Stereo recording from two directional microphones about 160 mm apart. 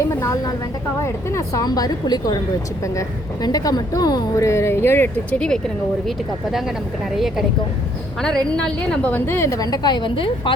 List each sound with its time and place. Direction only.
0.1 s a woman's voice: 20° left (ahead or behind); by 6.7 s centre (ahead or behind)
8.2 s a woman's voice: 5° left (ahead or behind); by 10.5 s 30° left (ahead or behind)